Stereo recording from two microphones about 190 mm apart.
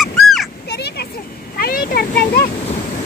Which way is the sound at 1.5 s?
50° left (ahead or behind).